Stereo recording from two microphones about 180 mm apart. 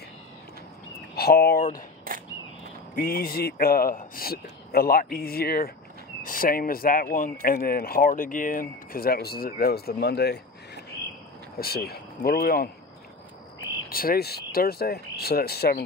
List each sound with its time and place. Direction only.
1.1 s a man's voice: 60° left (ahead or behind)
2.1 s a sound: 50° right (ahead or behind)
3.0 s a man's voice: 55° left (ahead or behind)
11.6 s a man's voice: 60° left (ahead or behind)
13.8 s a man's voice: 55° left (ahead or behind)